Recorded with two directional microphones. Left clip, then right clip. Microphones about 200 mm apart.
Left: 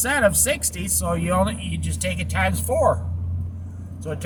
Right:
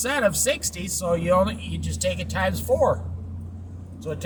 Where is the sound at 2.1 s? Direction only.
10° left (ahead or behind).